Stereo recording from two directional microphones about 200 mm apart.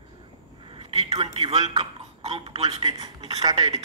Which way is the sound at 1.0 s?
30° right (ahead or behind).